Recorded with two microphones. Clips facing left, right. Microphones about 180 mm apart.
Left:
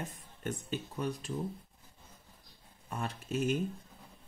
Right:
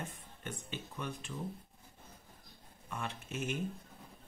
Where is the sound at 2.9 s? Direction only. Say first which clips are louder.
Left 5 dB; 40° left (ahead or behind).